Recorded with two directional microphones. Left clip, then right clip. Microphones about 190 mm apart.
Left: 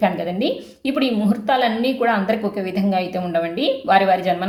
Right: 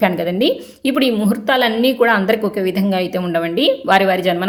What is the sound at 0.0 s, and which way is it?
A woman's voice, 35° right (ahead or behind).